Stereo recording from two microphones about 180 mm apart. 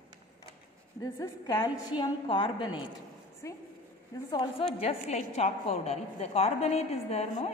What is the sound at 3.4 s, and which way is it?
Speech, 15° left (ahead or behind).